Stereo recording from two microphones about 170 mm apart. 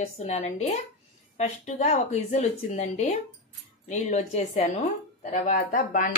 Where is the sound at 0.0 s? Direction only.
40° left (ahead or behind).